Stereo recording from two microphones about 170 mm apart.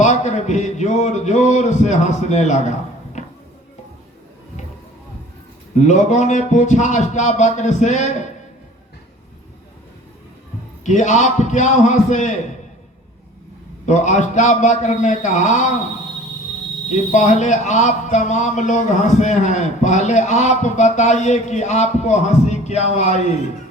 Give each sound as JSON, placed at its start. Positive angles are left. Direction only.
{"t": 0.0, "sound": "a man's voice", "side_deg": 45}
{"t": 5.7, "sound": "a man's voice", "side_deg": 45}
{"t": 10.8, "sound": "a man's voice", "side_deg": 45}
{"t": 13.8, "sound": "a man's voice", "side_deg": 45}
{"t": 17.1, "sound": "a man's voice", "side_deg": 45}